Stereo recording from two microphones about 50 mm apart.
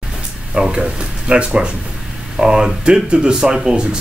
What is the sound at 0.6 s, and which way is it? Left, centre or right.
Speech, right.